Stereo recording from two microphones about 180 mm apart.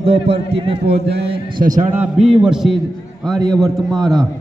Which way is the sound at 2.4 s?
Centre (ahead or behind).